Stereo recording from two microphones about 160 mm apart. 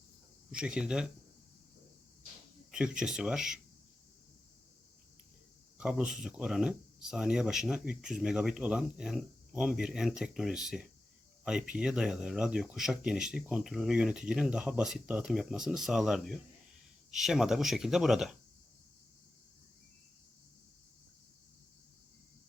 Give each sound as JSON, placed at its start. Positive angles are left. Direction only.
{"t": 0.5, "sound": "speech", "side_deg": -5}
{"t": 3.0, "sound": "speech", "side_deg": -5}
{"t": 5.7, "sound": "speech", "side_deg": -5}